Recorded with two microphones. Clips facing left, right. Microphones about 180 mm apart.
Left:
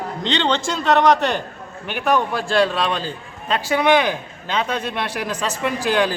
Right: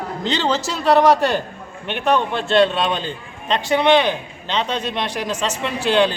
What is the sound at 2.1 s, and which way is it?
Speech, 25° right (ahead or behind).